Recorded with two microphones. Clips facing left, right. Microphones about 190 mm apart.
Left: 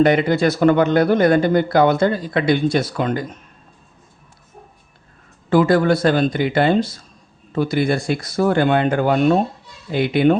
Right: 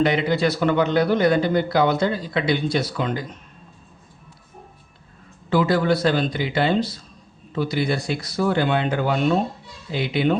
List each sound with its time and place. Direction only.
0.0 s speech: 50° left (ahead or behind)
5.5 s speech: 50° left (ahead or behind)